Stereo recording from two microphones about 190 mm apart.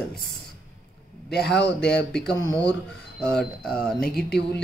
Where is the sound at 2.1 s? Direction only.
5° left (ahead or behind).